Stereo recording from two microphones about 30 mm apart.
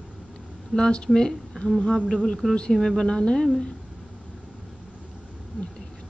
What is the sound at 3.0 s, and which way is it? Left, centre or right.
Speech, left.